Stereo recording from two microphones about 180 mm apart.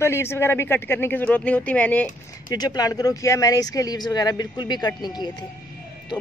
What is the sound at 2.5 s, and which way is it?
Speech, 20° left (ahead or behind).